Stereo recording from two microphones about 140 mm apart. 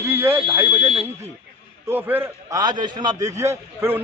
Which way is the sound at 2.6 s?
30° right (ahead or behind).